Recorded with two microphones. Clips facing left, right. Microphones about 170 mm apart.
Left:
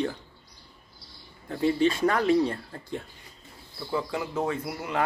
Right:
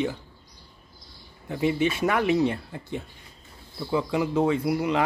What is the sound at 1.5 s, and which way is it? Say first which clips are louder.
Speech: left 1 dB; 15° right (ahead or behind).